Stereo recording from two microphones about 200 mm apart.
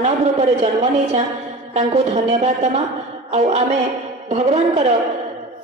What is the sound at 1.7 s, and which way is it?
Speech, 30° right (ahead or behind).